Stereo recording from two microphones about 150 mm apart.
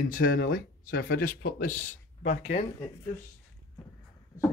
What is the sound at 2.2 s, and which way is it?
Speech, 50° left (ahead or behind).